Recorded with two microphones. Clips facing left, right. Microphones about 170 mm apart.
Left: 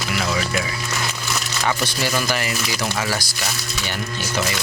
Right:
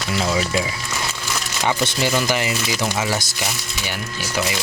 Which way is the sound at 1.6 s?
20° right (ahead or behind).